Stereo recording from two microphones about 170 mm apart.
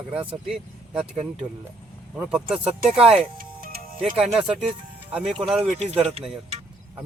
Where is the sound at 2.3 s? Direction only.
5° right (ahead or behind).